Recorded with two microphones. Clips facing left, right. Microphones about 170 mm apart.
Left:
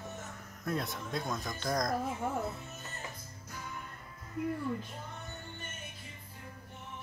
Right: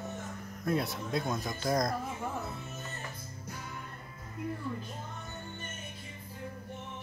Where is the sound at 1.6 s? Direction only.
5° right (ahead or behind).